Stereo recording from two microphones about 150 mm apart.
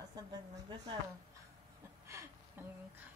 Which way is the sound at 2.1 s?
20° right (ahead or behind).